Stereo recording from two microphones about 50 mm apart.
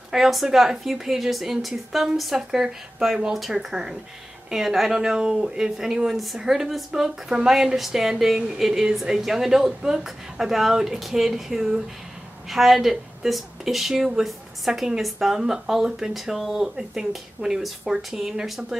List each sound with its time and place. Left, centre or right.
0.1 s a woman's voice: centre
14.7 s a woman's voice: centre
15.0 s a woman's voice: centre